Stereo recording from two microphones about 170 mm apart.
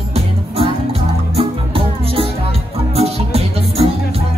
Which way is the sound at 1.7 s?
35° right (ahead or behind).